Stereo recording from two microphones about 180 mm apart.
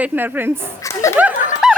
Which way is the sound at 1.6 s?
5° right (ahead or behind).